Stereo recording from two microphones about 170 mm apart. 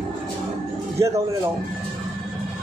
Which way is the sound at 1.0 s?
15° right (ahead or behind).